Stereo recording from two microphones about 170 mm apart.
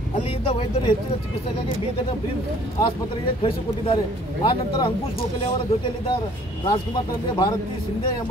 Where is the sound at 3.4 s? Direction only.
30° left (ahead or behind).